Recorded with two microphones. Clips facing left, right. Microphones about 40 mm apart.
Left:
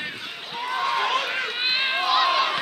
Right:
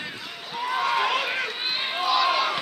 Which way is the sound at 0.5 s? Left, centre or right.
Centre.